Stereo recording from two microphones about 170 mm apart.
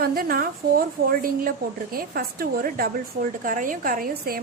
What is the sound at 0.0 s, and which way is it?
A woman's voice, 60° right (ahead or behind).